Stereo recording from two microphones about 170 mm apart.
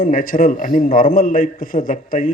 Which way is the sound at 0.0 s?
55° left (ahead or behind).